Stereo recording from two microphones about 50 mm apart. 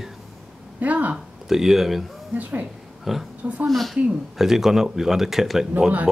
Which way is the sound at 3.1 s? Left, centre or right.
Centre.